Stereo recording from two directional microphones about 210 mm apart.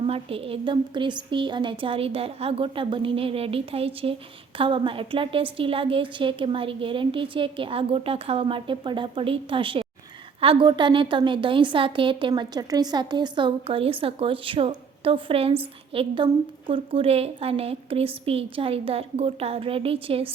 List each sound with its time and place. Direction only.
0.0 s a woman's voice: 25° right (ahead or behind)